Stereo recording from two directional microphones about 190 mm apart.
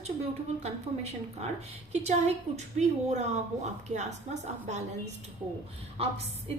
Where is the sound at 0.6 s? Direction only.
35° right (ahead or behind).